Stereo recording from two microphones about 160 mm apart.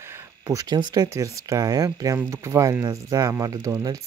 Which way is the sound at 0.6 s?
25° right (ahead or behind).